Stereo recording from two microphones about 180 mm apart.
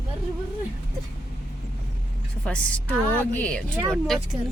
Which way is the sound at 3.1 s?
10° left (ahead or behind).